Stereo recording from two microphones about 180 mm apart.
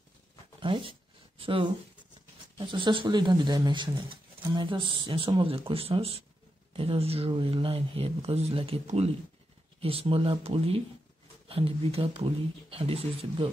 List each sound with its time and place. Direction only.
0.6 s speech: 30° right (ahead or behind)